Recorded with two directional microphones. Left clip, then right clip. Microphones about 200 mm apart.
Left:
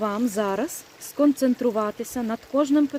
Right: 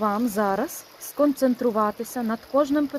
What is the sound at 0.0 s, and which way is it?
Speech, 25° left (ahead or behind).